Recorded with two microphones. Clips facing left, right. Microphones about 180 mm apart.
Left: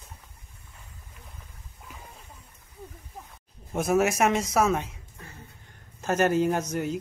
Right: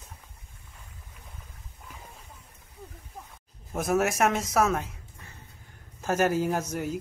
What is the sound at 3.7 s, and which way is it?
A man's voice, centre (ahead or behind).